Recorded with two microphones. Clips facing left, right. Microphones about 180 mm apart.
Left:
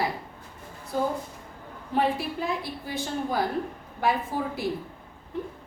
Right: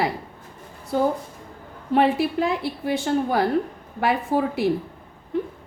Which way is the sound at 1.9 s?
70° right (ahead or behind).